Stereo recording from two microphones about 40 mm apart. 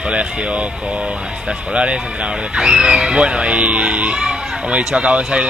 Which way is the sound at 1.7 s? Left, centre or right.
Right.